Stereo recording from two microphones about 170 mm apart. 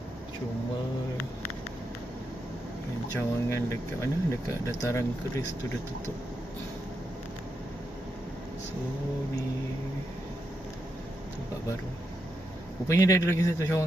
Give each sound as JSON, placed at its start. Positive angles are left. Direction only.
{"t": 3.2, "sound": "speech", "side_deg": 15}
{"t": 12.9, "sound": "speech", "side_deg": 20}